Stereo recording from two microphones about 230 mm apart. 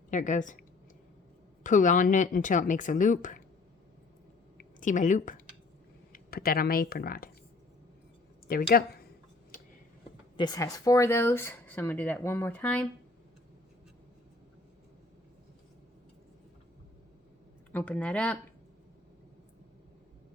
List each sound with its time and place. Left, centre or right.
0.1 s speech: left
1.6 s speech: left
4.5 s speech: left
8.4 s speech: left
10.3 s speech: centre
17.7 s speech: centre